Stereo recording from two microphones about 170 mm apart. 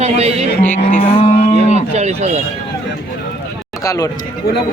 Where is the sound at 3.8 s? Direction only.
20° left (ahead or behind).